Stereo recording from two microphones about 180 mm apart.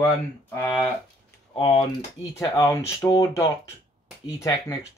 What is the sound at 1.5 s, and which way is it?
Speech, 25° left (ahead or behind).